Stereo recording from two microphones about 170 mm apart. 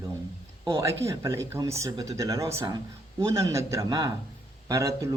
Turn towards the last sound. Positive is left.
turn(degrees=-20)  # may be behind; listen again after turning